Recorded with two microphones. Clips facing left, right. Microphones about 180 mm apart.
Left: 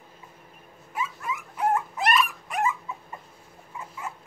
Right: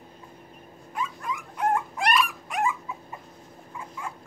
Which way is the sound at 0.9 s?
5° left (ahead or behind).